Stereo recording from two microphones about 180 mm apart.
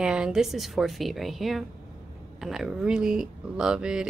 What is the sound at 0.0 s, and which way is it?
Speech, 5° right (ahead or behind).